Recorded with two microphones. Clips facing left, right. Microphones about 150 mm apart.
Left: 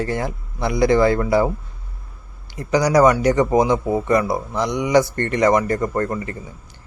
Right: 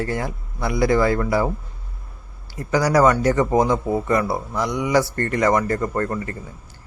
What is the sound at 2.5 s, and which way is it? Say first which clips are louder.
Speech: left 2 dB; 20° left (ahead or behind).